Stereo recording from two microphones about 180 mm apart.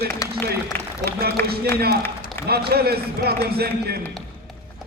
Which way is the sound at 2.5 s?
60° right (ahead or behind).